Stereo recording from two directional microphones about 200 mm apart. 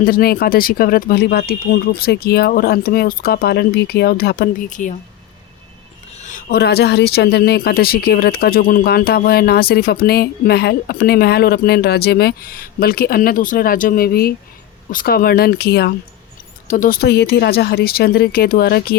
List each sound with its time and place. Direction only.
0.0 s speech: 50° left (ahead or behind)
6.2 s a sound: 40° left (ahead or behind)
6.6 s speech: 55° left (ahead or behind)
16.6 s speech: 40° left (ahead or behind)